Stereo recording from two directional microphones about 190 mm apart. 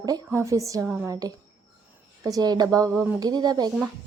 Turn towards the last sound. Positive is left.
turn(degrees=-20)  # may be behind; listen again after turning